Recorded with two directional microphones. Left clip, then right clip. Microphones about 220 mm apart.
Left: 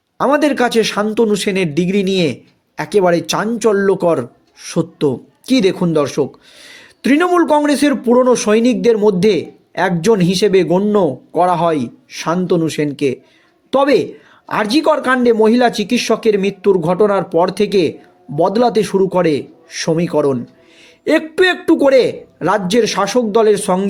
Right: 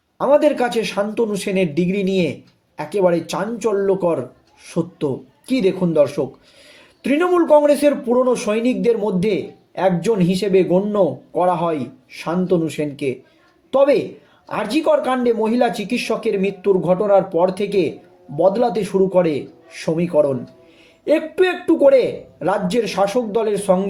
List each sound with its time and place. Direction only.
0.2 s a man's voice: 45° left (ahead or behind)